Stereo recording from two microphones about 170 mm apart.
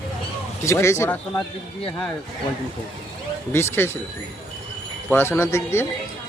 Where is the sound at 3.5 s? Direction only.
15° left (ahead or behind).